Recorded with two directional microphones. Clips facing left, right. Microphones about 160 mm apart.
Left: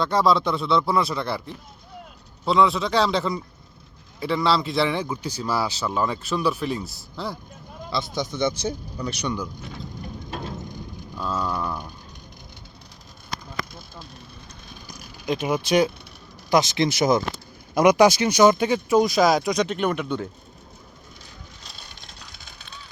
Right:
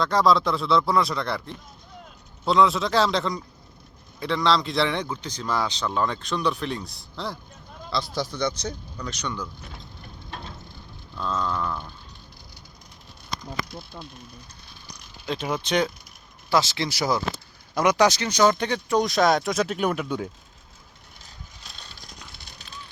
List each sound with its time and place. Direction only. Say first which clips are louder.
0.0 s a man's voice: even; centre (ahead or behind)
8.6 s speech: left 5 dB; 10° left (ahead or behind)
10.3 s a sound: left 6 dB; 10° left (ahead or behind)
14.9 s a man's voice: left 4 dB; 10° left (ahead or behind)